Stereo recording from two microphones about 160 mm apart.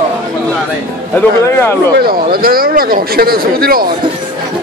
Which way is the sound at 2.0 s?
70° right (ahead or behind).